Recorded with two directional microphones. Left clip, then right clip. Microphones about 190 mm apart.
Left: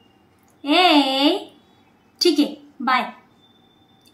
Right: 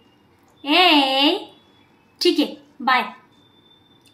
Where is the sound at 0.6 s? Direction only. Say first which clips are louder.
Right 1 dB; centre (ahead or behind).